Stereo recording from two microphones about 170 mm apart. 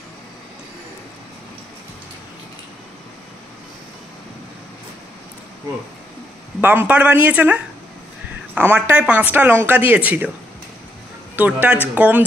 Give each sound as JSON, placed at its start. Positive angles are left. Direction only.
{"t": 6.6, "sound": "speech", "side_deg": -10}
{"t": 11.3, "sound": "speech", "side_deg": -10}